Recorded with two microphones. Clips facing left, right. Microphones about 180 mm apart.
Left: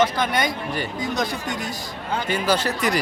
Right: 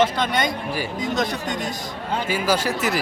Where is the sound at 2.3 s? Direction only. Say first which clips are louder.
Even; 10° right (ahead or behind).